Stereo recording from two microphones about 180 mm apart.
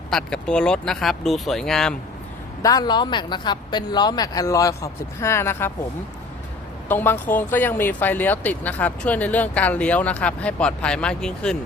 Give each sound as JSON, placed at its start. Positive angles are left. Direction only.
{"t": 0.1, "sound": "speech", "side_deg": 5}
{"t": 2.6, "sound": "a woman's voice", "side_deg": 20}
{"t": 6.8, "sound": "speech", "side_deg": 10}